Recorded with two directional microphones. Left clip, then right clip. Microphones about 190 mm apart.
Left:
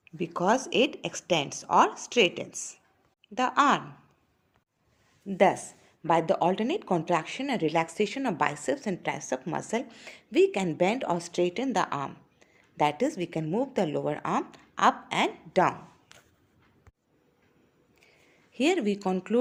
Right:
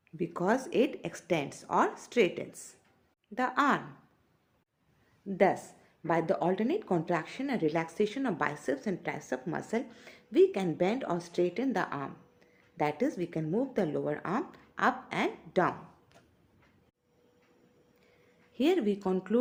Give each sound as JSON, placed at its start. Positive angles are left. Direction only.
{"t": 0.2, "sound": "speech", "side_deg": 30}
{"t": 5.3, "sound": "speech", "side_deg": 35}
{"t": 18.5, "sound": "speech", "side_deg": 35}